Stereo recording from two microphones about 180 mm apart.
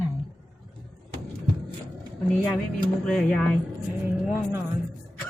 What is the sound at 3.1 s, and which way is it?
Speech, 5° left (ahead or behind).